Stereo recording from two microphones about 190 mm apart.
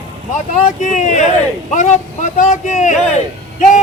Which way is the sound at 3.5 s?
40° left (ahead or behind).